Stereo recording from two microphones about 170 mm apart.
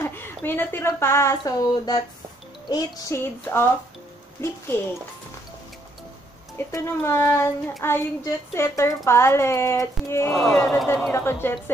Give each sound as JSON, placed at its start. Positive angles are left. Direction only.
{"t": 0.0, "sound": "speech", "side_deg": 10}
{"t": 6.7, "sound": "speech", "side_deg": 15}
{"t": 10.3, "sound": "speech", "side_deg": 5}